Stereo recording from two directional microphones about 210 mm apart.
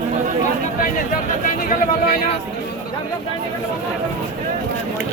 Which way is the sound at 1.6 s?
40° left (ahead or behind).